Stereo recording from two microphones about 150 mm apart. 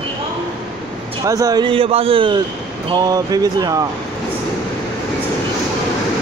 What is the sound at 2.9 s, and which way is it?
Speech, 25° right (ahead or behind).